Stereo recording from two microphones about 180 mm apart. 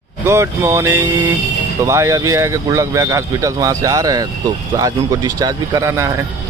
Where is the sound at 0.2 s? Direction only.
15° right (ahead or behind).